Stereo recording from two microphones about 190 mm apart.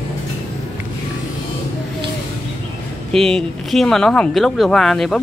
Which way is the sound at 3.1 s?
Centre (ahead or behind).